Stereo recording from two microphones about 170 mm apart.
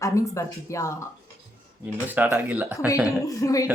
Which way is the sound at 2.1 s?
10° right (ahead or behind).